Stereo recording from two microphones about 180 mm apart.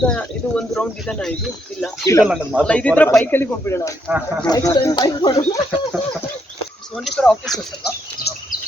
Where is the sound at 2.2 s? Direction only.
5° right (ahead or behind).